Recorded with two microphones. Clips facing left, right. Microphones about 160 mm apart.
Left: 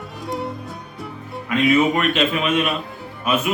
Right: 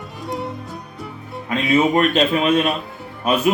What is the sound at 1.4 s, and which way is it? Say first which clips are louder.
A man's voice: left 1 dB; 30° right (ahead or behind).